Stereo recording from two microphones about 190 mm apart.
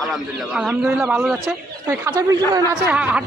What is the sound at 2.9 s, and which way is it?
Speech, 5° right (ahead or behind).